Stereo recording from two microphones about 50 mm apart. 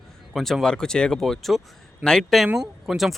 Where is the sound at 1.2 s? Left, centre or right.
Centre.